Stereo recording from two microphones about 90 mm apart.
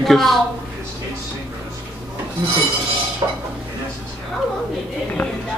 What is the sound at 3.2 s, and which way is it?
Speech, 50° right (ahead or behind).